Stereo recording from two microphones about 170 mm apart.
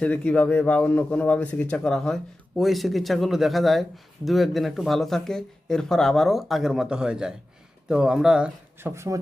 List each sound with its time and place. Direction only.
0.0 s speech: 10° left (ahead or behind)
8.9 s a man's voice: 15° right (ahead or behind)